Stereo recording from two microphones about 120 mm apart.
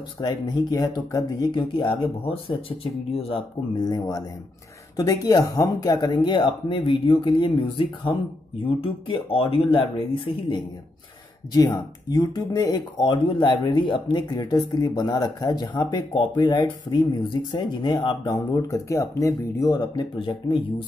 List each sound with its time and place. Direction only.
0.2 s speech: 35° left (ahead or behind); by 3.4 s 50° left (ahead or behind)
3.7 s speech: 35° left (ahead or behind)
11.5 s speech: 35° left (ahead or behind)